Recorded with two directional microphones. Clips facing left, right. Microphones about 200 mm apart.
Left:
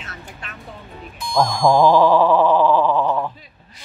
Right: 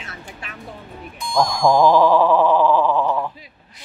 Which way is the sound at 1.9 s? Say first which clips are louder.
Even; 15° left (ahead or behind).